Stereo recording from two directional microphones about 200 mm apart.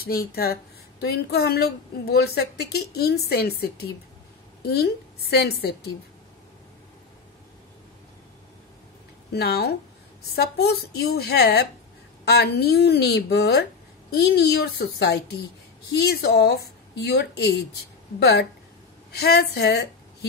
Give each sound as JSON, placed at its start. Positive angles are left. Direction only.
{"t": 0.0, "sound": "a woman's voice", "side_deg": 50}
{"t": 9.3, "sound": "a woman's voice", "side_deg": 55}